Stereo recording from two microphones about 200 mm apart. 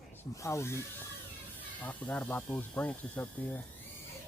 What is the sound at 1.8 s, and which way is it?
Speech, 10° left (ahead or behind).